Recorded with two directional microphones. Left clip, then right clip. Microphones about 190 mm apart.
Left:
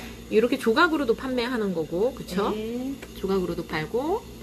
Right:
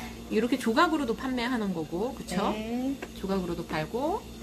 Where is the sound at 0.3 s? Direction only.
10° left (ahead or behind).